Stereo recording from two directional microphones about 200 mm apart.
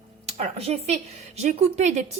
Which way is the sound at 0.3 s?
30° right (ahead or behind).